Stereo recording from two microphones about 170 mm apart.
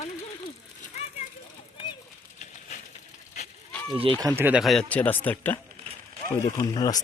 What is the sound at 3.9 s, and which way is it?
Speech, 25° right (ahead or behind).